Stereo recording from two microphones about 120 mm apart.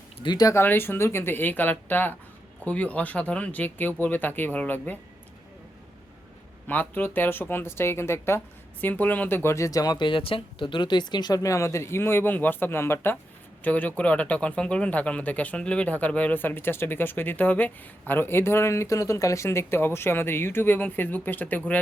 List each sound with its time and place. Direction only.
0.2 s speech: 35° left (ahead or behind)
0.5 s speech: 20° left (ahead or behind)
6.7 s speech: 15° left (ahead or behind)